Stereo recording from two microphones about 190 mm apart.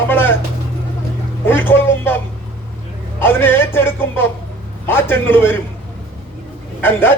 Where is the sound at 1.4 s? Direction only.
10° left (ahead or behind).